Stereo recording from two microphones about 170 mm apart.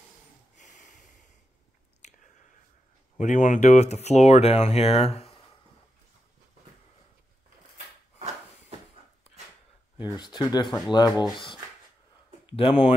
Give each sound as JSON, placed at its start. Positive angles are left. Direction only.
{"t": 0.6, "sound": "snort", "side_deg": 45}
{"t": 3.2, "sound": "speech", "side_deg": 45}
{"t": 7.7, "sound": "a sound", "side_deg": -40}
{"t": 10.1, "sound": "speech", "side_deg": 25}
{"t": 12.4, "sound": "speech", "side_deg": 30}